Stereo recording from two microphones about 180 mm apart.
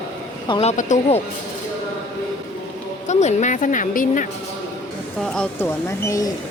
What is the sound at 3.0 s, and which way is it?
A woman's voice, 40° left (ahead or behind).